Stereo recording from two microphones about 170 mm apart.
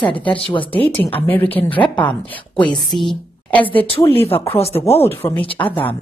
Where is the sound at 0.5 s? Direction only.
10° left (ahead or behind).